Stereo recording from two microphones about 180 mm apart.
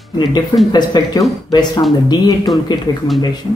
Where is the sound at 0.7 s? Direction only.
25° left (ahead or behind).